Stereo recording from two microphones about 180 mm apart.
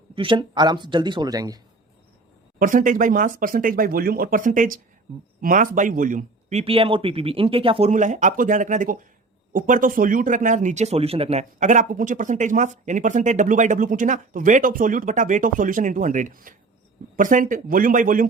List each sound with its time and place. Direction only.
0.2 s speech: 25° right (ahead or behind)
2.6 s speech: 50° right (ahead or behind); by 7.9 s 30° right (ahead or behind)
7.9 s speech: 45° right (ahead or behind)